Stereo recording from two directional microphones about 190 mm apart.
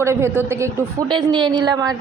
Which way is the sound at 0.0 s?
15° right (ahead or behind).